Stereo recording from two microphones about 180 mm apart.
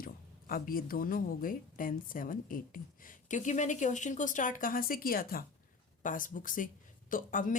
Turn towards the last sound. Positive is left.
turn(degrees=45)  # may be behind; listen again after turning